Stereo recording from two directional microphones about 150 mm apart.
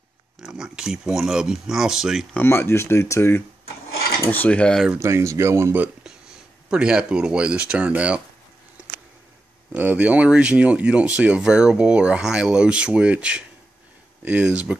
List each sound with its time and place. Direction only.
0.4 s speech: 5° right (ahead or behind)
2.3 s speech: 15° left (ahead or behind)
4.8 s speech: 15° right (ahead or behind)
6.7 s speech: 5° right (ahead or behind)
9.7 s speech: 10° right (ahead or behind)